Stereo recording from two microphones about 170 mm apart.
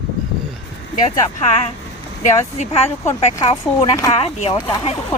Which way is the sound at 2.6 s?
40° left (ahead or behind).